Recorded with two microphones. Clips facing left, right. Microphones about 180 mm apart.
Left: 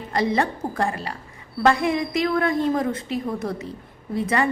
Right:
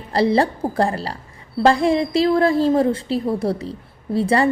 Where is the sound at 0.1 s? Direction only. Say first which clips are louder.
Right 5 dB; 30° right (ahead or behind).